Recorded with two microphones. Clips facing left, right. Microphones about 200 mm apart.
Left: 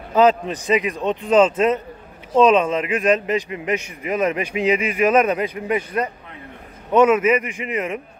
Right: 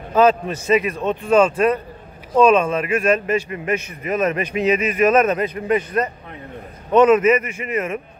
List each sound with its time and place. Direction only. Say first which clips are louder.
0.1 s a man's voice: even; 15° left (ahead or behind)